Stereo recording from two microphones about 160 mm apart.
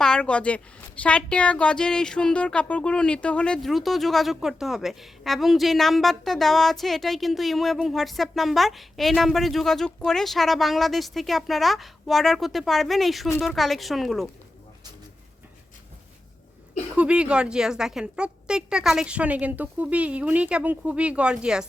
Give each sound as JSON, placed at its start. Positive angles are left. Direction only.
{"t": 0.0, "sound": "a woman's voice", "side_deg": 5}
{"t": 17.0, "sound": "a woman's voice", "side_deg": -5}